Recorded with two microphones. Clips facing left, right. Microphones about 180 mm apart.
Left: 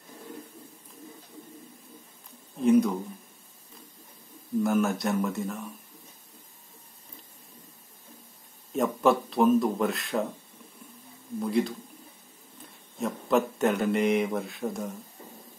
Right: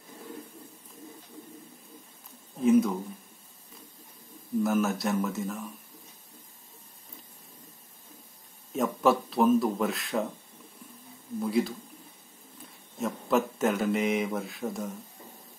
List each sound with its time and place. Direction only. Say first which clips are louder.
2.6 s speech: left 1 dB; centre (ahead or behind)
4.6 s speech: left 2 dB; centre (ahead or behind)
8.7 s speech: left 1 dB; centre (ahead or behind)
11.4 s speech: left 1 dB; centre (ahead or behind)
12.9 s speech: left 1 dB; centre (ahead or behind)